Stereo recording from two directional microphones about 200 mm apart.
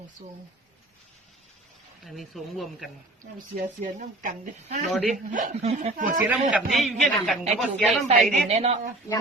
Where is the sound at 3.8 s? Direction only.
40° right (ahead or behind).